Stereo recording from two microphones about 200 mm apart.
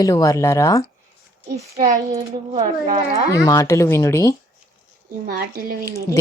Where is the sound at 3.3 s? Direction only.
15° left (ahead or behind).